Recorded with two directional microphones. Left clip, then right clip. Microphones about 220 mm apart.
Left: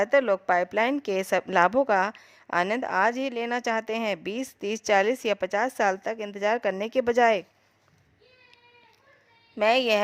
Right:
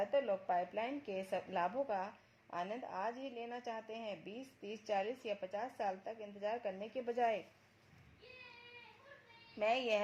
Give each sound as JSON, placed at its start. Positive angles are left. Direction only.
{"t": 0.0, "sound": "a woman's voice", "side_deg": 45}
{"t": 9.6, "sound": "a woman's voice", "side_deg": 35}